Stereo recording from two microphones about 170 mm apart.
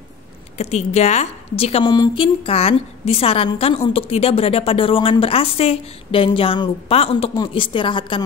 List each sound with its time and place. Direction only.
0.6 s a woman's voice: 40° left (ahead or behind)